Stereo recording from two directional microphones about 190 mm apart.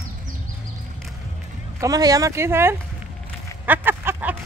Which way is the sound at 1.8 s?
20° right (ahead or behind).